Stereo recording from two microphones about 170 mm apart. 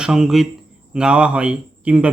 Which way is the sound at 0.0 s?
5° right (ahead or behind).